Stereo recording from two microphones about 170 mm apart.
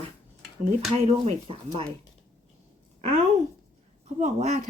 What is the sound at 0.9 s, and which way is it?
Speech, 40° right (ahead or behind).